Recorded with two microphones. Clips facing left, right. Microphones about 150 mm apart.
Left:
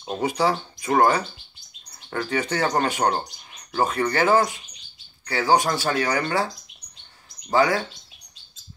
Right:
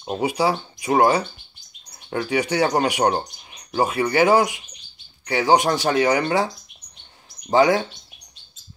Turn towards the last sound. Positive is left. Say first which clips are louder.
# right 4 dB
turn(degrees=-20)  # may be behind; listen again after turning